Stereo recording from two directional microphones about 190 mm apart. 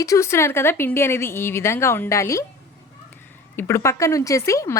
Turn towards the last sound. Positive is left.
turn(degrees=15)  # may be behind; listen again after turning